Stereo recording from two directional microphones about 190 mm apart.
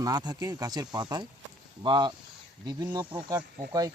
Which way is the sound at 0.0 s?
20° right (ahead or behind).